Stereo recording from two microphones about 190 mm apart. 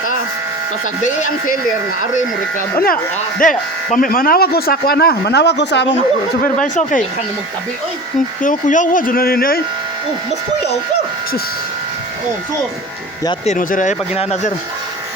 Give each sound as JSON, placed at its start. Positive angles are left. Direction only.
{"t": 2.1, "sound": "speech", "side_deg": 45}
{"t": 6.4, "sound": "speech", "side_deg": 45}
{"t": 8.4, "sound": "speech", "side_deg": 45}
{"t": 13.4, "sound": "speech", "side_deg": 40}